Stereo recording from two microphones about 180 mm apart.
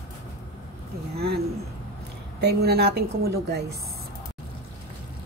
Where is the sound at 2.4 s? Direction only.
65° right (ahead or behind).